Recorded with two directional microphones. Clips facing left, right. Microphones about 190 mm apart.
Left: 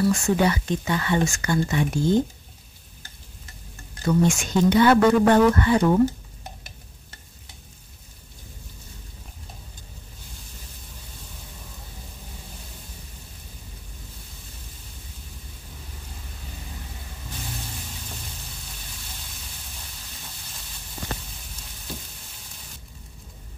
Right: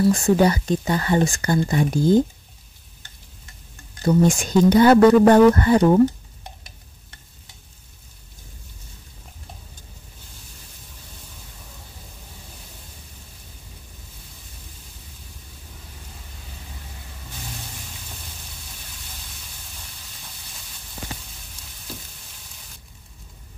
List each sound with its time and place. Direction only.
0.1 s speech: 35° right (ahead or behind)
4.0 s speech: 35° right (ahead or behind)